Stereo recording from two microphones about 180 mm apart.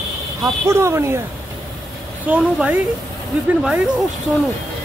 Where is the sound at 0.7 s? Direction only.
15° right (ahead or behind).